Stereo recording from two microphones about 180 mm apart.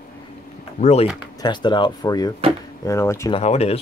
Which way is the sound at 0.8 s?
35° left (ahead or behind).